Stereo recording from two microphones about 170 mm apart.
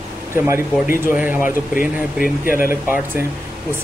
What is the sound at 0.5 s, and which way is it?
Speech, 15° right (ahead or behind).